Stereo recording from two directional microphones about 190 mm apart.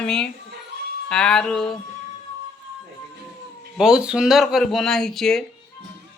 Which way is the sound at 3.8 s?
5° right (ahead or behind).